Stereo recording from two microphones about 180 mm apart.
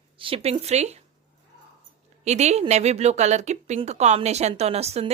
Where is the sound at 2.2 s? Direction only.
40° right (ahead or behind).